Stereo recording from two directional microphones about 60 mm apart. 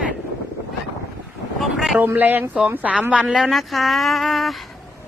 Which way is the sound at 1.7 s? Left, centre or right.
Centre.